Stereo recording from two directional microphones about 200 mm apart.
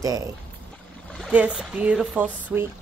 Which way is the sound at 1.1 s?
5° right (ahead or behind).